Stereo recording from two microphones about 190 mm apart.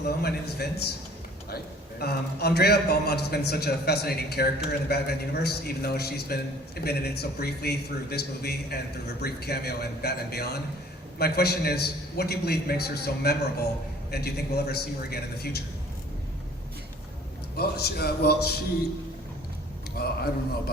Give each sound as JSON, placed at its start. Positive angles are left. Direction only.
{"t": 0.0, "sound": "a man's voice", "side_deg": 55}
{"t": 2.0, "sound": "a man's voice", "side_deg": 55}
{"t": 17.6, "sound": "a man's voice", "side_deg": 55}
{"t": 20.0, "sound": "a man's voice", "side_deg": 55}